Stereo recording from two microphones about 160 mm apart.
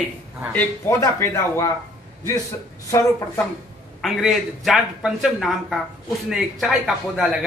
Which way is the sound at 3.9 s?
Centre (ahead or behind).